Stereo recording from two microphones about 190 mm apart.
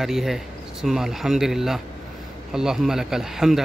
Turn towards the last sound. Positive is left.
turn(degrees=0)  # may be behind; listen again after turning